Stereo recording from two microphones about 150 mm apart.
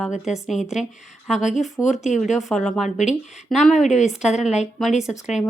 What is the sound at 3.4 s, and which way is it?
Speech, centre (ahead or behind).